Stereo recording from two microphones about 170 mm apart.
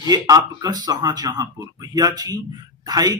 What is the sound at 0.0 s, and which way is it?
A man's voice, 20° right (ahead or behind).